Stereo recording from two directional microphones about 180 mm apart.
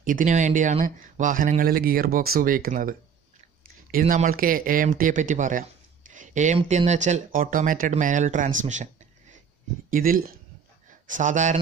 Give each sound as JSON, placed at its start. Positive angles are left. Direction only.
{"t": 0.0, "sound": "speech", "side_deg": -45}
{"t": 4.0, "sound": "speech", "side_deg": -45}
{"t": 9.8, "sound": "speech", "side_deg": -50}